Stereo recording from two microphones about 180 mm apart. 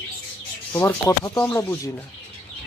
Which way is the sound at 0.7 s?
10° left (ahead or behind).